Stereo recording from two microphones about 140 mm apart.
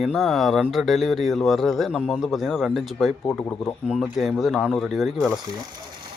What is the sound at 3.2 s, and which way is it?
Speech, 15° left (ahead or behind).